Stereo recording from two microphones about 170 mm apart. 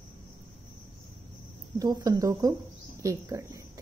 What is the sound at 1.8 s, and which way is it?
A woman's voice, 20° right (ahead or behind).